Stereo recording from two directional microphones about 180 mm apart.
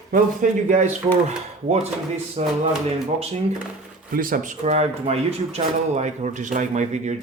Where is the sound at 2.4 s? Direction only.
35° right (ahead or behind).